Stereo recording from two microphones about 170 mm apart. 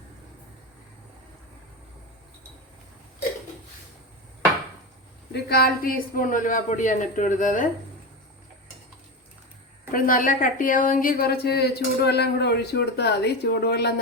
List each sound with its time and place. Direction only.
5.3 s a woman's voice: 65° left (ahead or behind); by 7.7 s 50° left (ahead or behind)
9.9 s a woman's voice: 50° left (ahead or behind); by 13.9 s 75° left (ahead or behind)